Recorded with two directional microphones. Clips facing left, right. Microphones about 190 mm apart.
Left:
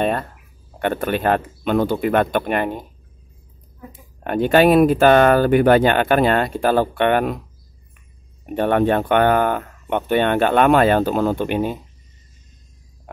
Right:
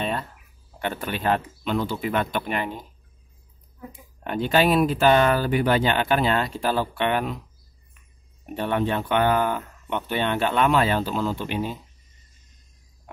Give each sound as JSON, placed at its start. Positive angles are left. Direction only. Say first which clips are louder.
{"t": 0.0, "sound": "speech", "louder": "left 7 dB", "side_deg": 55}
{"t": 4.2, "sound": "speech", "louder": "left 7 dB", "side_deg": 55}
{"t": 8.5, "sound": "speech", "louder": "left 7 dB", "side_deg": 55}